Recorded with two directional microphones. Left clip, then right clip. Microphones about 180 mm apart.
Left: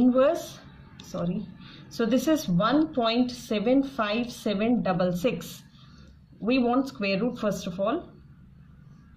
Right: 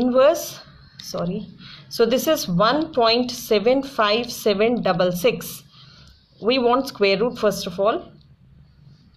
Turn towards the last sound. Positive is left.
turn(degrees=-35)  # may be behind; listen again after turning